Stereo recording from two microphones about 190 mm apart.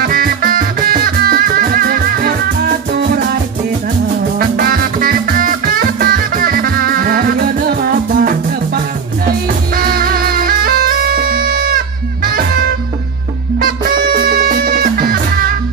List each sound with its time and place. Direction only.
0.0 s music: 50° right (ahead or behind)
4.4 s music: 50° right (ahead or behind)